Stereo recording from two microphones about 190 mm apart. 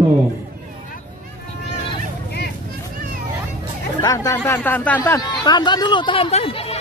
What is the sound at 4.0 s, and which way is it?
Speech, 20° left (ahead or behind).